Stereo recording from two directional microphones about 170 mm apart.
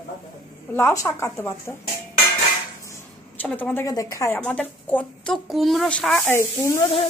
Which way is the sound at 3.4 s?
10° left (ahead or behind).